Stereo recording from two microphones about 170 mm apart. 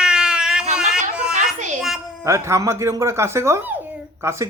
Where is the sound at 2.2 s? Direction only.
15° right (ahead or behind).